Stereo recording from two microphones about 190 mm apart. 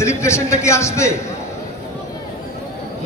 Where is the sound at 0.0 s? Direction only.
15° left (ahead or behind).